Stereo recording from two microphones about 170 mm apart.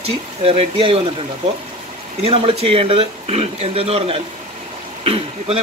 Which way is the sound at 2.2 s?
35° right (ahead or behind).